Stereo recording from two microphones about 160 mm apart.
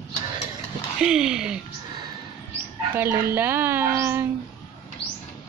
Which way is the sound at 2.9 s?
15° right (ahead or behind).